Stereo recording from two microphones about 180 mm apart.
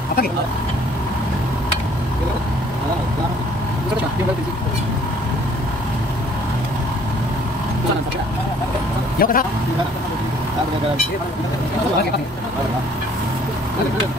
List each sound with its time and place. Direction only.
9.2 s speech: 55° left (ahead or behind)